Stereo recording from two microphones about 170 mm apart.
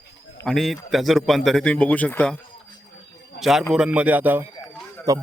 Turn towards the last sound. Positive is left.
turn(degrees=-20)  # may be behind; listen again after turning